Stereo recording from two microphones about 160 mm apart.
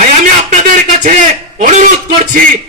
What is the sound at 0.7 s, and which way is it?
Speech, 55° right (ahead or behind).